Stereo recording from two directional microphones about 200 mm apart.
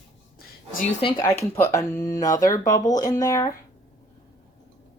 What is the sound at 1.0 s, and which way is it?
Speech, 15° left (ahead or behind).